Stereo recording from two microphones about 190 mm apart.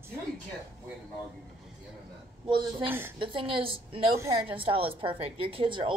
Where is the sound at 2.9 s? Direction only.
10° right (ahead or behind).